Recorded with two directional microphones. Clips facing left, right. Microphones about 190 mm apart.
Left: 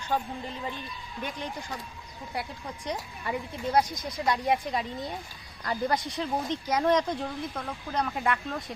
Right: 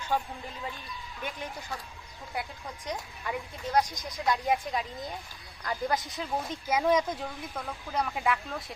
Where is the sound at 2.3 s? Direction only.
Centre (ahead or behind).